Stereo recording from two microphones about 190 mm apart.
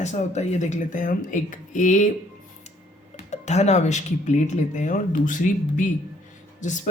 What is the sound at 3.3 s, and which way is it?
Speech, 35° left (ahead or behind).